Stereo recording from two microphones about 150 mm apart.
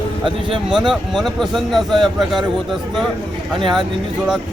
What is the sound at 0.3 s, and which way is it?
Speech, 35° right (ahead or behind).